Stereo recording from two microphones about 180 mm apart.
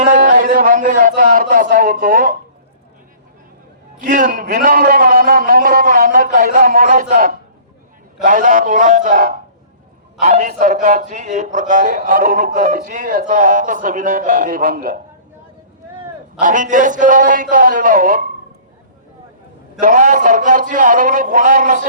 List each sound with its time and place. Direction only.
0.0 s speech: 45° right (ahead or behind)
4.0 s a man's voice: 45° right (ahead or behind)
16.4 s a man's voice: 45° right (ahead or behind)
19.8 s a man's voice: 45° right (ahead or behind)